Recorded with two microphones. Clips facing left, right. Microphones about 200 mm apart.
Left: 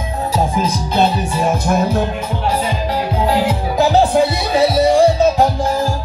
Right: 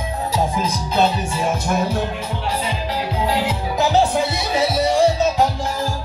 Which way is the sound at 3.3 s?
50° left (ahead or behind).